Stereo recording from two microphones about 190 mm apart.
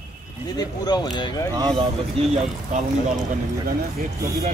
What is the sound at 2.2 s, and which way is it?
Speech, 30° right (ahead or behind).